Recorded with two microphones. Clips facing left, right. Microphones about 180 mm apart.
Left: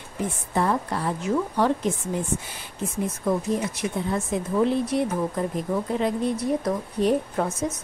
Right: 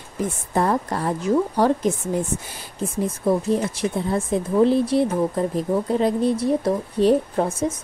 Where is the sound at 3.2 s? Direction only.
30° right (ahead or behind).